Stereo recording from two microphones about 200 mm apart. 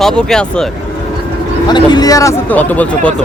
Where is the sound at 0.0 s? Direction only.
Centre (ahead or behind).